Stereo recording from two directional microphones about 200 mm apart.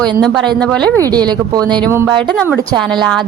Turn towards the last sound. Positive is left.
turn(degrees=0)  # may be behind; listen again after turning